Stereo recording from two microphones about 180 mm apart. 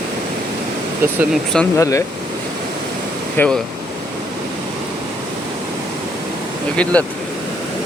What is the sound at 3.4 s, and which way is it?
Speech, 10° left (ahead or behind).